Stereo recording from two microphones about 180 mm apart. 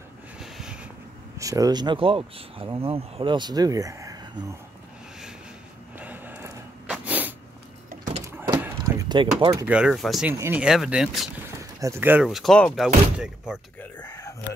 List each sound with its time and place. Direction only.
0.4 s a sound: 5° right (ahead or behind)
1.4 s speech: 20° right (ahead or behind)
5.9 s sneeze: 10° right (ahead or behind)
7.9 s power windows: 45° right (ahead or behind)
8.6 s door: 15° right (ahead or behind)
9.7 s speech: 5° right (ahead or behind)
10.3 s speech: 15° right (ahead or behind)
13.7 s a sound: 10° left (ahead or behind)